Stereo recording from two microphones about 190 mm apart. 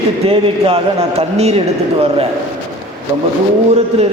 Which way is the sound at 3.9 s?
35° right (ahead or behind).